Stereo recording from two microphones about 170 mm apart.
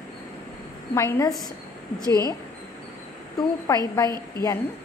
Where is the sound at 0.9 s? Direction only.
15° left (ahead or behind).